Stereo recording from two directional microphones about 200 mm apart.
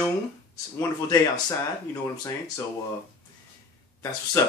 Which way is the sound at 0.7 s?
15° left (ahead or behind).